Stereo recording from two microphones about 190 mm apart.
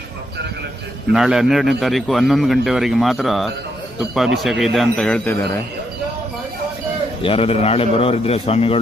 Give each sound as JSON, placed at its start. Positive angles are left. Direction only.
{"t": 1.1, "sound": "a man's voice", "side_deg": 0}
{"t": 7.2, "sound": "a man's voice", "side_deg": 30}